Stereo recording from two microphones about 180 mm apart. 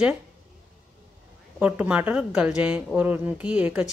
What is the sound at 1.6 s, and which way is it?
A woman's voice, 10° right (ahead or behind).